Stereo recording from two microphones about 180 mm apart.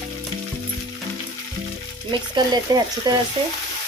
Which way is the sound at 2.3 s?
20° right (ahead or behind).